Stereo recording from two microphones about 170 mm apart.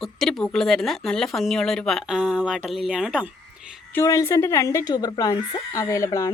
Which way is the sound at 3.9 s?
20° left (ahead or behind).